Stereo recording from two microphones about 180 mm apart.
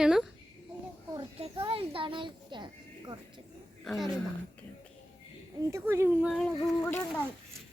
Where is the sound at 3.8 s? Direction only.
Centre (ahead or behind).